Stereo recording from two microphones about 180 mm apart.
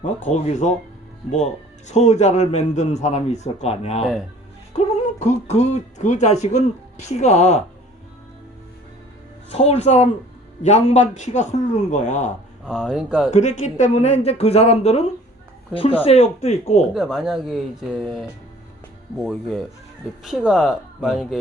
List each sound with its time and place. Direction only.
0.0 s speech: 40° left (ahead or behind)
1.9 s speech: 40° left (ahead or behind)
4.7 s music: 40° left (ahead or behind)
5.2 s speech: 40° left (ahead or behind)
9.5 s speech: 35° left (ahead or behind)
12.6 s speech: 5° right (ahead or behind)
13.3 s speech: 40° left (ahead or behind)
16.9 s speech: centre (ahead or behind)